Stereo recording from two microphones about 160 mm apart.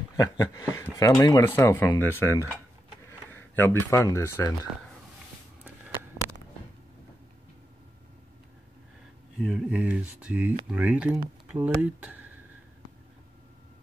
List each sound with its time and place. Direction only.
0.2 s speech: 20° left (ahead or behind)
9.4 s speech: 5° right (ahead or behind)